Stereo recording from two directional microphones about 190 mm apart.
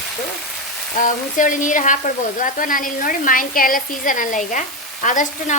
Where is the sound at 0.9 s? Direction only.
45° left (ahead or behind).